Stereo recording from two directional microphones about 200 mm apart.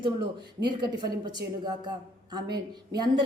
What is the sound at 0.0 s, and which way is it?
A woman's voice, 20° right (ahead or behind).